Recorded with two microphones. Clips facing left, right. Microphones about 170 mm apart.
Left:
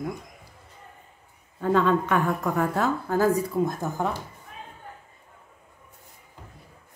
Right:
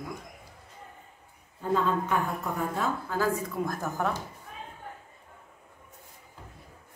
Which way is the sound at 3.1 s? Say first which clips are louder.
Left 7 dB; 45° left (ahead or behind).